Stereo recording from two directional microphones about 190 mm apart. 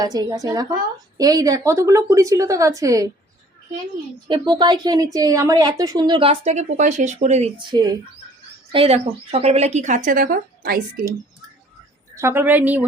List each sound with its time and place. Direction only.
0.0 s a woman's voice: 20° right (ahead or behind)
4.3 s a woman's voice: 25° right (ahead or behind)
7.6 s a woman's voice: 20° right (ahead or behind); by 11.0 s 50° right (ahead or behind)
12.1 s speech: 10° right (ahead or behind)